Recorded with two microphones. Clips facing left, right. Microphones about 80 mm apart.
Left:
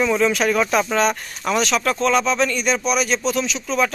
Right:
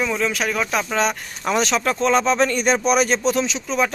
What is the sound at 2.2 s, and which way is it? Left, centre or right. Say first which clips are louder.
Speech: right 2 dB; right.